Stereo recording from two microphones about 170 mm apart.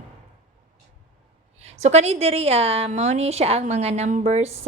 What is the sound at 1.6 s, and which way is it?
A woman's voice, 40° right (ahead or behind).